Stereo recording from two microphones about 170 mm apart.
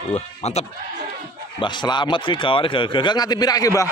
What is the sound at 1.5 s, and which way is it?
Speech, 25° left (ahead or behind).